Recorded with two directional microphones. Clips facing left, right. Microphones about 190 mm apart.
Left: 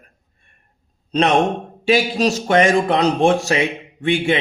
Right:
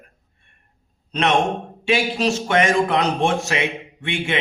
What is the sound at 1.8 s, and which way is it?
A man's voice, 40° left (ahead or behind).